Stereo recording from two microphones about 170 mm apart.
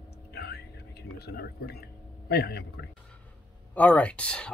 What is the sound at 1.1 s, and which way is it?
Speech, 70° left (ahead or behind).